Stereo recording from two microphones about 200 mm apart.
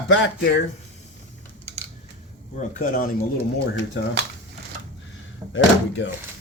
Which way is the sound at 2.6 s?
45° left (ahead or behind).